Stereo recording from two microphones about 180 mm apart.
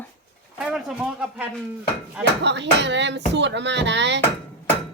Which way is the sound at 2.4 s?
75° right (ahead or behind).